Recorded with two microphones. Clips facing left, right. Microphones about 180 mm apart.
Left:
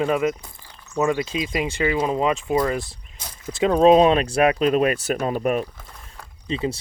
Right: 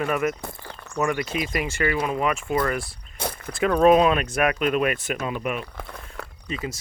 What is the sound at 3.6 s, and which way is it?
Speech, 25° left (ahead or behind).